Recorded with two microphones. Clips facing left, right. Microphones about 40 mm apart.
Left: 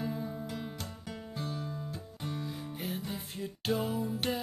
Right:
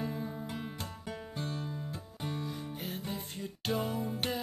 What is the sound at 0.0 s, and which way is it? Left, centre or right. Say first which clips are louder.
Music: left 1 dB; centre.